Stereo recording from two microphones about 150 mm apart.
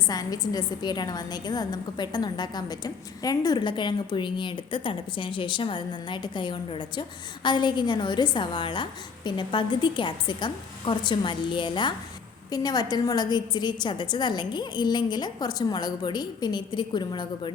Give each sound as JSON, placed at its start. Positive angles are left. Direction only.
{"t": 0.1, "sound": "a woman's voice", "side_deg": 25}